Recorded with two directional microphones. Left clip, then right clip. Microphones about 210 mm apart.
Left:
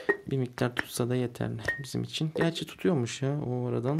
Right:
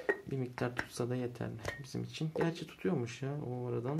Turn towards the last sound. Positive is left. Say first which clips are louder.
# left 7 dB
turn(degrees=45)  # may be behind; listen again after turning